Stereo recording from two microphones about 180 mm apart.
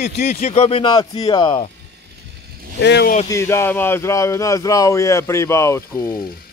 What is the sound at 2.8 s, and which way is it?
Speech, 70° left (ahead or behind).